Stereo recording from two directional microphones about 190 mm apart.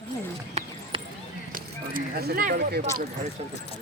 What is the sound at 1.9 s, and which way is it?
Speech, 55° right (ahead or behind).